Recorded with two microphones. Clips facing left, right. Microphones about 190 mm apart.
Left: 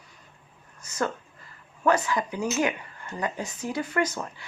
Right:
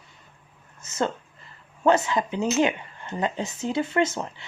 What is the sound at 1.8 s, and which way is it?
Speech, 25° right (ahead or behind).